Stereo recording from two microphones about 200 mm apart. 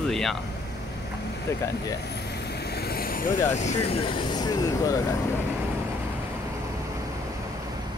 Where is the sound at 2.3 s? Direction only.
55° left (ahead or behind).